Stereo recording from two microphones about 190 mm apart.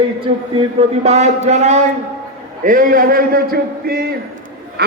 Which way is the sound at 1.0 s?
35° right (ahead or behind).